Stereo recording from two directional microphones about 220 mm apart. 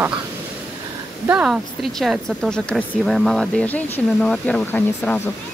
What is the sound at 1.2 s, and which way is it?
A woman's voice, 5° right (ahead or behind).